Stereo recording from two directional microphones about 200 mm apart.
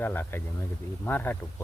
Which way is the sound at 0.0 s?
10° left (ahead or behind).